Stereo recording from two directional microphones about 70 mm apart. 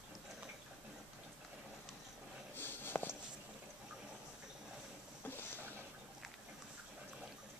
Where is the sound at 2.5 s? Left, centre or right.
Left.